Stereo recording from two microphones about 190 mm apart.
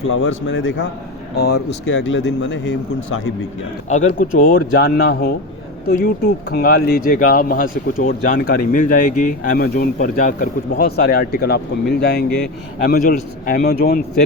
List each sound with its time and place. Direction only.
0.1 s a man's voice: 90° left; by 0.9 s 75° left (ahead or behind)
1.4 s speech: 60° left (ahead or behind)
4.2 s speech: 45° left (ahead or behind)